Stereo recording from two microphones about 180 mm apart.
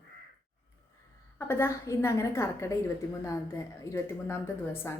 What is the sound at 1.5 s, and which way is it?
A woman's voice, 15° left (ahead or behind).